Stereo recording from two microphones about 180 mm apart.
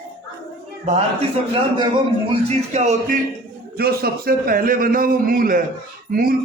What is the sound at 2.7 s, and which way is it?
Music, 40° right (ahead or behind).